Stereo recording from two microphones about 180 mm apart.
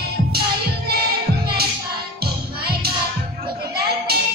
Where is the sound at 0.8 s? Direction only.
60° right (ahead or behind).